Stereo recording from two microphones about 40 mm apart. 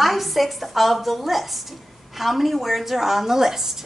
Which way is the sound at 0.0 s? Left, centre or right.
Centre.